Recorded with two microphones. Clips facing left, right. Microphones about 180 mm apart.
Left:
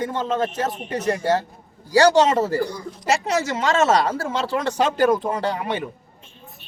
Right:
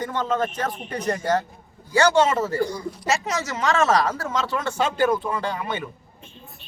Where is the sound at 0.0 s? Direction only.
25° left (ahead or behind).